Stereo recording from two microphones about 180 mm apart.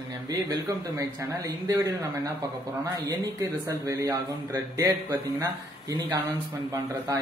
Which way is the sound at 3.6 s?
20° right (ahead or behind).